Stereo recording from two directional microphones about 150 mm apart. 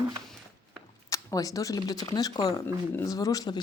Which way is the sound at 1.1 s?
20° left (ahead or behind).